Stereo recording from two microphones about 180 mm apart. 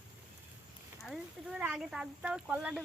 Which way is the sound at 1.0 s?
5° right (ahead or behind).